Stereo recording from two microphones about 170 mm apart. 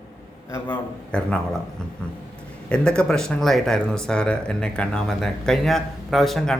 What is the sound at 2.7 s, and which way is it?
Speech, 5° left (ahead or behind).